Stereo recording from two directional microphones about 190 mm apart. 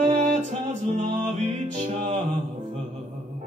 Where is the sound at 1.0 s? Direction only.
40° right (ahead or behind).